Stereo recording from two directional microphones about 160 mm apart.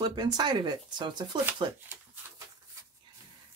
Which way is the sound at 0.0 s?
25° right (ahead or behind).